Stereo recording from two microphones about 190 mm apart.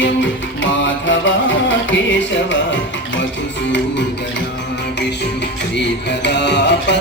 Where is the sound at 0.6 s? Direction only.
80° left.